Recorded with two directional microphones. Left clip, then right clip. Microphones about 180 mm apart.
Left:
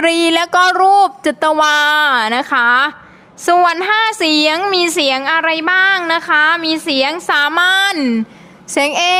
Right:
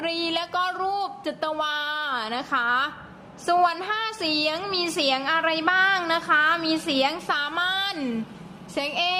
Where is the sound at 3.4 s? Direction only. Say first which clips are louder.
Left 10 dB; 55° left (ahead or behind).